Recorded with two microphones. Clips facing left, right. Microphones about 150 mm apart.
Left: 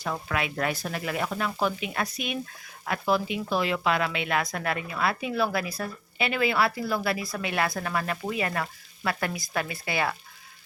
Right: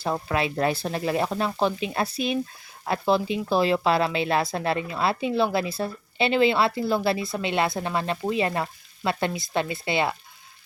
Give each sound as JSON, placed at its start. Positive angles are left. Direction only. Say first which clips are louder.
{"t": 0.0, "sound": "speech", "louder": "right 4 dB", "side_deg": -30}